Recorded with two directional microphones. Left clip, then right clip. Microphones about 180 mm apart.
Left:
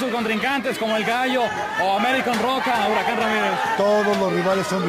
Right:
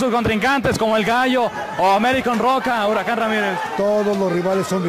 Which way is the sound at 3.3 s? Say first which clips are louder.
Even; 45° right (ahead or behind).